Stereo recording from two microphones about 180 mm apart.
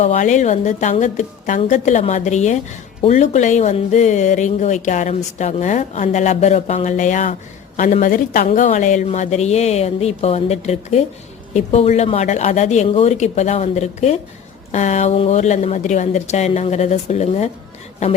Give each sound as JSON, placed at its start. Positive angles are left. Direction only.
{"t": 0.0, "sound": "speech", "side_deg": 40}